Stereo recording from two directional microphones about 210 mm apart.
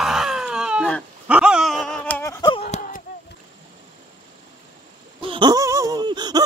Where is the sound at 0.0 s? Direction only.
Centre (ahead or behind); by 2.6 s 15° left (ahead or behind).